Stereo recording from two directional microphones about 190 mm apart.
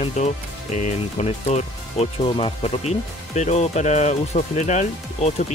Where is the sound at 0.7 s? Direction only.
35° left (ahead or behind).